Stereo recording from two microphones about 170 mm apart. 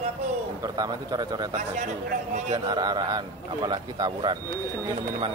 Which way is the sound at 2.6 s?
25° right (ahead or behind).